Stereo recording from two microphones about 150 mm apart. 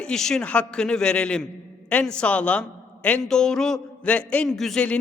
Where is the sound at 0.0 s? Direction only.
5° left (ahead or behind).